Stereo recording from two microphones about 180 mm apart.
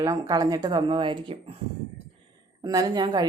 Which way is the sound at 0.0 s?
20° right (ahead or behind).